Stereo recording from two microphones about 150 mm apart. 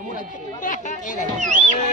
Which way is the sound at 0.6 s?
60° left (ahead or behind).